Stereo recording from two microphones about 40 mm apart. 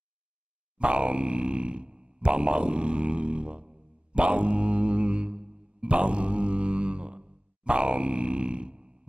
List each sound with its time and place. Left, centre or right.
0.7 s speech: right